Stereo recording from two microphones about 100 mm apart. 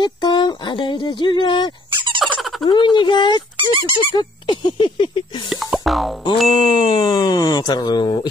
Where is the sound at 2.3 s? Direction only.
Centre (ahead or behind).